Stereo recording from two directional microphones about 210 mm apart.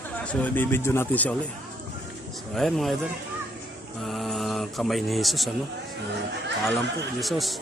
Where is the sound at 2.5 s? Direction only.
Centre (ahead or behind).